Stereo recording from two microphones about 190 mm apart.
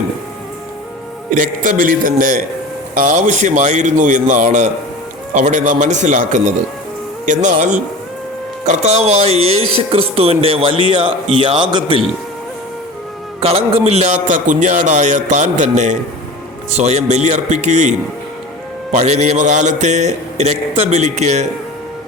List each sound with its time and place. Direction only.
1.3 s a man's voice: 45° right (ahead or behind); by 12.0 s 25° right (ahead or behind)
13.4 s a man's voice: 30° right (ahead or behind)